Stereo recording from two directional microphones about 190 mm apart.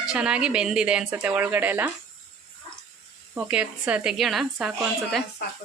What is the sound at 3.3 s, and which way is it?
A woman's voice, 5° right (ahead or behind).